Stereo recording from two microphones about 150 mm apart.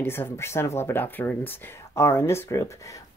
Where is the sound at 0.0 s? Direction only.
15° left (ahead or behind).